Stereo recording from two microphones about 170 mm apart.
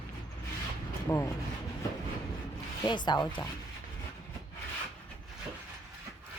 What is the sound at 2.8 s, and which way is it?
Speech, 25° left (ahead or behind).